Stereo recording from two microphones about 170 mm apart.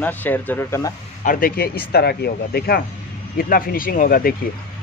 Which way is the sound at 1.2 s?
55° left (ahead or behind).